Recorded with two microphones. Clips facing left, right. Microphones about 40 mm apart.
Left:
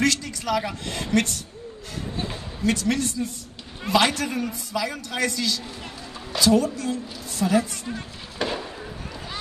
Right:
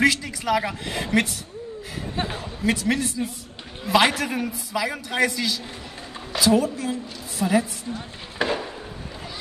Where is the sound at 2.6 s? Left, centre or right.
Centre.